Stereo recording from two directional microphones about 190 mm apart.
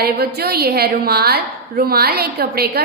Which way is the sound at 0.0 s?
55° right (ahead or behind).